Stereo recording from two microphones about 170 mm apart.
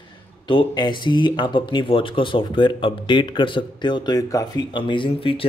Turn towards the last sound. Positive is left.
turn(degrees=30)  # may be behind; listen again after turning